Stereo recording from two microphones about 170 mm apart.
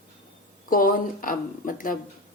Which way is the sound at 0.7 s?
55° left (ahead or behind).